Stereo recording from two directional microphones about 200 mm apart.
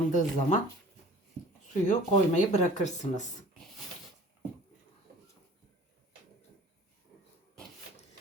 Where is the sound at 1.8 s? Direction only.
35° left (ahead or behind).